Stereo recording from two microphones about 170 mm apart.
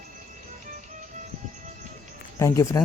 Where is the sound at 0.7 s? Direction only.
50° right (ahead or behind).